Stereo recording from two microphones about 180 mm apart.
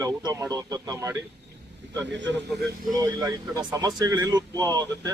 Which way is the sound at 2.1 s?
80° right.